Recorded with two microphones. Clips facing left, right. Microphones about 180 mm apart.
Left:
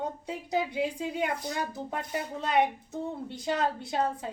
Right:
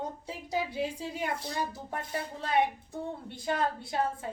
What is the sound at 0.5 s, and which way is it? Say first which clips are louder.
A woman's voice: left 3 dB; 20° left (ahead or behind).